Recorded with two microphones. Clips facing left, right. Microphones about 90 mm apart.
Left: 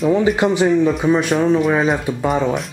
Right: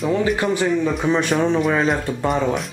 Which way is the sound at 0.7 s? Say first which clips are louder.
Left 4 dB; centre (ahead or behind).